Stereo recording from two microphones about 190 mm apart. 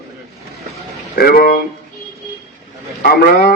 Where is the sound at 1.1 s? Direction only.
55° left (ahead or behind).